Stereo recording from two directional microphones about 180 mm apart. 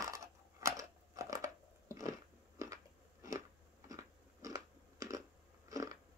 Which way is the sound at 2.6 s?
15° right (ahead or behind).